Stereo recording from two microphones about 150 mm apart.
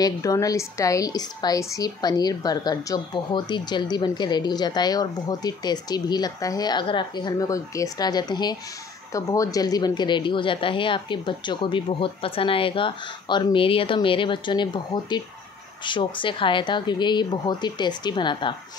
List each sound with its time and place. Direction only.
0.0 s a woman's voice: 25° left (ahead or behind)